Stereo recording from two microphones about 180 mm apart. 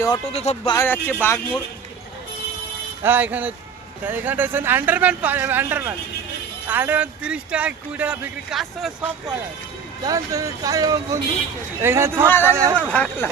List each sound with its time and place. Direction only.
0.3 s speech: 35° left (ahead or behind)
0.8 s speech: 10° left (ahead or behind)
3.0 s speech: 10° right (ahead or behind)
10.0 s speech: 20° right (ahead or behind)
12.9 s speech: 5° left (ahead or behind)